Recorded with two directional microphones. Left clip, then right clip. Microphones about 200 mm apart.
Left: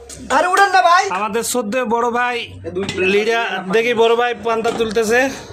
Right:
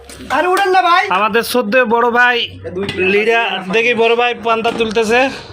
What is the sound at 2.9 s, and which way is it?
Speech, 5° left (ahead or behind).